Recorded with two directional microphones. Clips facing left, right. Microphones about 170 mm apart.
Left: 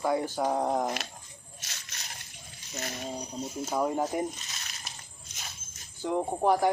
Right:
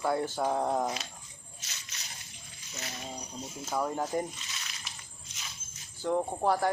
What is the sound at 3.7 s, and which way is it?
Speech, 15° left (ahead or behind).